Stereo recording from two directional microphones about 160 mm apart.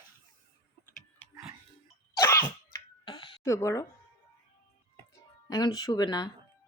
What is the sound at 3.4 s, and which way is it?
Speech, 20° left (ahead or behind).